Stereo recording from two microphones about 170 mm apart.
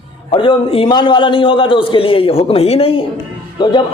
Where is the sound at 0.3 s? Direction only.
30° left (ahead or behind).